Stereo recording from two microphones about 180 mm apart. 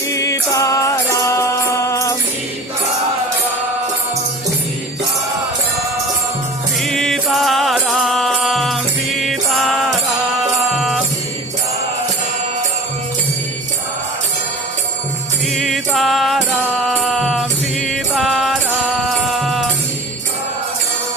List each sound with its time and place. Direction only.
0.1 s music: 15° left (ahead or behind)
6.8 s music: centre (ahead or behind)
15.5 s music: centre (ahead or behind)